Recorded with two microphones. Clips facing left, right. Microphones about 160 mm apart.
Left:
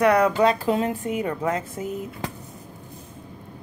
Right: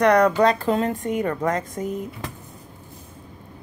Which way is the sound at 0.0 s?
10° left (ahead or behind).